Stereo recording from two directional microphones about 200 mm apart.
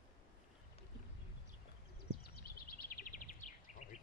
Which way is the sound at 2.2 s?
50° left (ahead or behind).